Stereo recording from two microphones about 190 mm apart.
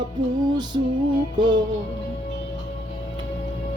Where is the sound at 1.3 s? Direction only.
25° right (ahead or behind).